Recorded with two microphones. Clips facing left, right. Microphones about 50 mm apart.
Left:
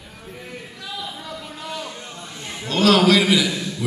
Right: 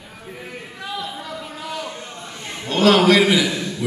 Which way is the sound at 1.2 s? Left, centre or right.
Centre.